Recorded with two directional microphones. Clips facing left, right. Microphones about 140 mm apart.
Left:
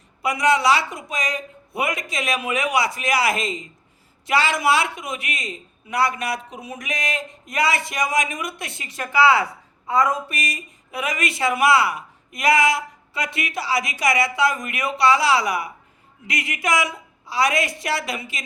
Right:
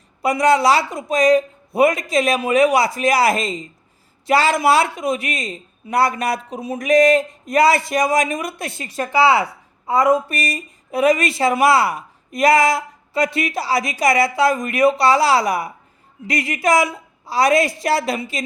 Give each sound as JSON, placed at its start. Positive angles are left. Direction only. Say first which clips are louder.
{"t": 0.2, "sound": "a woman's voice", "louder": "right 4 dB", "side_deg": -35}